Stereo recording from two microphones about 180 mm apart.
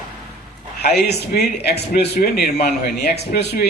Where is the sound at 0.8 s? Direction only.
60° left (ahead or behind).